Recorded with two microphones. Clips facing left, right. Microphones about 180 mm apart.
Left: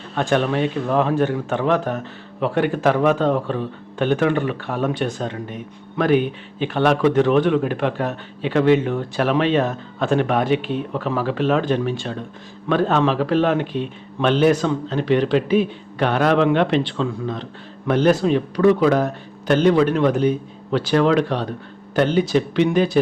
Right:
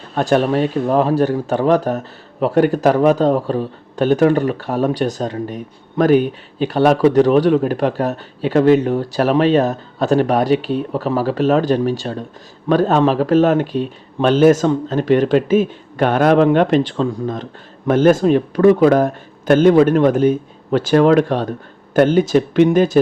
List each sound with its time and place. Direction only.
0.1 s a man's voice: 40° right (ahead or behind)